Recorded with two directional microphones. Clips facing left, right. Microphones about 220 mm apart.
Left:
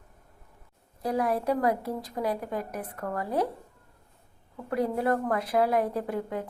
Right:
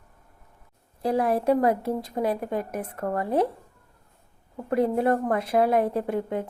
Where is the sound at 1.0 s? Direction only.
30° right (ahead or behind).